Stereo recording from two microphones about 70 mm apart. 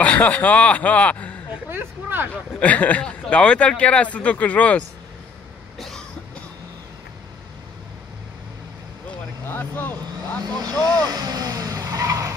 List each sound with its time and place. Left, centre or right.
0.0 s speech: left
1.7 s speech: right
2.6 s speech: left
5.8 s cough: centre
9.5 s speech: left
10.8 s vehicle: right